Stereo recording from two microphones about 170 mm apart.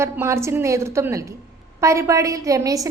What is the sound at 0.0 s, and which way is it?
A woman's voice, 15° right (ahead or behind).